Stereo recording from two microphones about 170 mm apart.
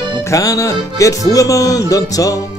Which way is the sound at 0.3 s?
20° left (ahead or behind).